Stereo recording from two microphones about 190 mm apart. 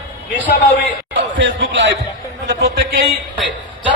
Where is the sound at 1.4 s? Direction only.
70° right (ahead or behind).